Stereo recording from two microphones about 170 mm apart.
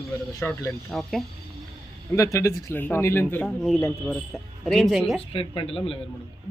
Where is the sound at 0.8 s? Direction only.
Centre (ahead or behind).